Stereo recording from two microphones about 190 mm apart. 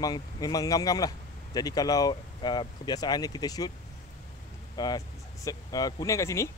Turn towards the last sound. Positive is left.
turn(degrees=15)  # may be behind; listen again after turning